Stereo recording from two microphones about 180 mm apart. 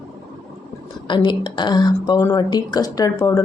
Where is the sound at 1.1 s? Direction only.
25° left (ahead or behind).